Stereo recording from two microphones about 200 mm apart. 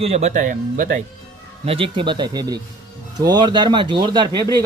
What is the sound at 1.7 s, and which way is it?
Speech, 25° right (ahead or behind).